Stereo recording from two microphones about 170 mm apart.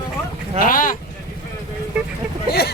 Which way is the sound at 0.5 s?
55° left (ahead or behind).